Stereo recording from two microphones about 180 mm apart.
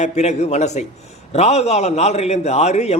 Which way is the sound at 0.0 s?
40° left (ahead or behind).